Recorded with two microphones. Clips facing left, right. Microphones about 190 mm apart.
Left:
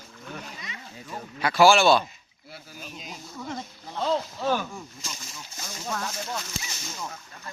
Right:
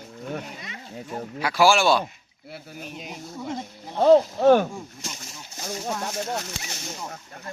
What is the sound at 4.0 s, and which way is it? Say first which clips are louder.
Speech: right 11 dB; 55° right (ahead or behind).